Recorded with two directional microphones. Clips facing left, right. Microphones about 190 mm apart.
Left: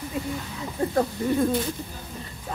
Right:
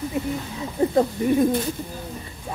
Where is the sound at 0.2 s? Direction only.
20° right (ahead or behind).